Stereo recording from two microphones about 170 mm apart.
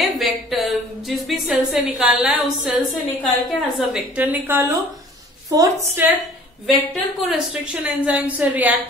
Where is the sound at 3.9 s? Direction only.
10° right (ahead or behind).